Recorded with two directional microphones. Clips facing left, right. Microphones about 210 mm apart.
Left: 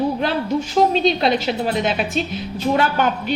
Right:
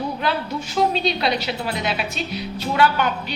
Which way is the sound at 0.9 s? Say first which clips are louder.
Left 5 dB; 45° left (ahead or behind).